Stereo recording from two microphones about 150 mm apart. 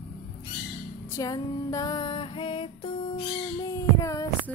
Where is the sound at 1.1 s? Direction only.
20° left (ahead or behind).